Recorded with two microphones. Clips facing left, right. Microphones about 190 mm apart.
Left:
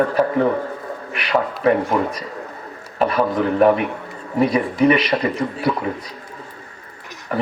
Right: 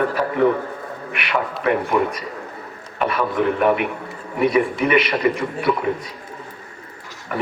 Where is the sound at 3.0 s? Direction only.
30° left (ahead or behind).